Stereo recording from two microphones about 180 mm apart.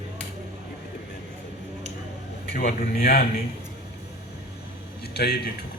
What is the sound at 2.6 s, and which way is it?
Speech, 55° left (ahead or behind).